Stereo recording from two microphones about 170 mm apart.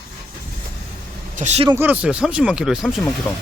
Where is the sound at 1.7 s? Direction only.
10° right (ahead or behind).